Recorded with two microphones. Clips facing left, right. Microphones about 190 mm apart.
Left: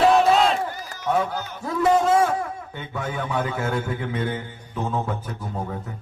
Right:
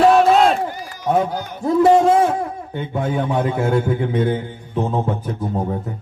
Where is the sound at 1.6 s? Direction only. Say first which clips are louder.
Right 7 dB; 30° right (ahead or behind).